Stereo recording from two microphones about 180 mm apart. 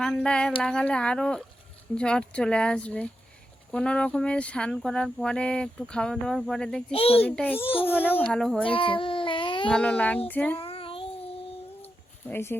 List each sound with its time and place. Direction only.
0.0 s speech: 5° left (ahead or behind)
6.9 s a child's voice: 35° left (ahead or behind)
7.3 s a child's voice: 10° left (ahead or behind)
7.6 s a child's voice: 30° left (ahead or behind)
7.9 s a child's voice: 10° left (ahead or behind)
8.6 s a sound: 30° left (ahead or behind)
9.6 s a child's voice: 5° left (ahead or behind)
10.6 s child singing: 30° left (ahead or behind)
12.3 s a child's voice: 15° left (ahead or behind)